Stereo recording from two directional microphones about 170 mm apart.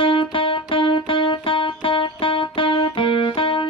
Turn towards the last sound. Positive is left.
turn(degrees=30)  # may be behind; listen again after turning